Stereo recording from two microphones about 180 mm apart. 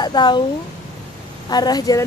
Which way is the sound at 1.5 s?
20° left (ahead or behind).